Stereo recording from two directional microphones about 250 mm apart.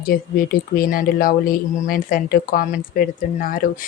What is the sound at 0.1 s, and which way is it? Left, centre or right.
Speech, left.